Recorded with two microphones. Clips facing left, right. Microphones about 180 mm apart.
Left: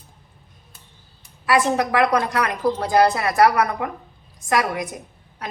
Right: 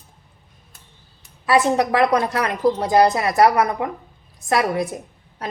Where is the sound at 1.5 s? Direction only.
20° right (ahead or behind).